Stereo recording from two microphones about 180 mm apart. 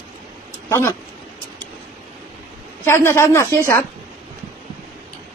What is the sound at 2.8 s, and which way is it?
Speech, 15° left (ahead or behind).